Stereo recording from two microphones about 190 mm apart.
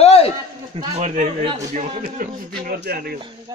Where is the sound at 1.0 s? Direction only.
40° right (ahead or behind).